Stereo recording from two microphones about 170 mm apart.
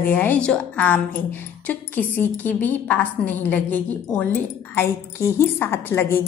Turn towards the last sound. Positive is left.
turn(degrees=10)  # may be behind; listen again after turning